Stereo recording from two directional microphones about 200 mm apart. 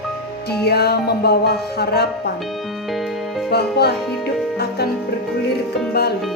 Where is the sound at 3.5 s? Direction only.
55° left (ahead or behind).